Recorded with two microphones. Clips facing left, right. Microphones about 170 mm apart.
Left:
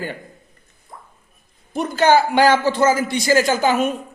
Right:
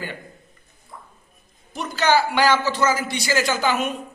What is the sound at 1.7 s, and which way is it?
A man's voice, 50° left (ahead or behind).